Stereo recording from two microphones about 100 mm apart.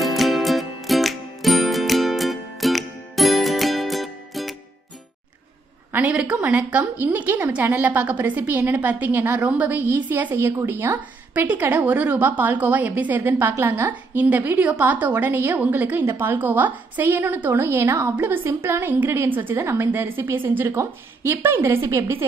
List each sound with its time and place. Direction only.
0.0 s music: centre (ahead or behind)
5.9 s a sound: 20° right (ahead or behind)
6.1 s a woman's voice: 10° right (ahead or behind)